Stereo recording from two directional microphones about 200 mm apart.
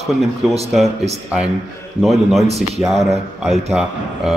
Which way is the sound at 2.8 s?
Centre (ahead or behind).